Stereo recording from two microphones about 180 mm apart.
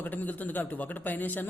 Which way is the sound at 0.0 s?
10° left (ahead or behind).